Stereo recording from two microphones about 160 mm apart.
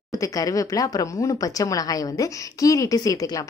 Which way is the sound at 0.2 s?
20° left (ahead or behind).